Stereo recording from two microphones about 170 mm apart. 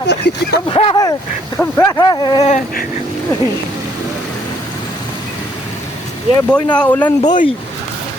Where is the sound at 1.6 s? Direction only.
20° left (ahead or behind).